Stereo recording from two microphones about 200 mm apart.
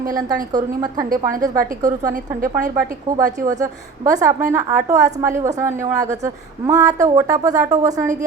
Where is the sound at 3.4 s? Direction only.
15° right (ahead or behind).